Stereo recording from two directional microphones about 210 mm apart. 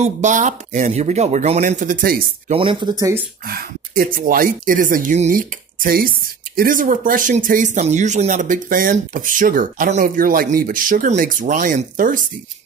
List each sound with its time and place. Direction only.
0.0 s speech: 35° right (ahead or behind)
2.5 s speech: 25° right (ahead or behind)
3.4 s speech: 45° right (ahead or behind)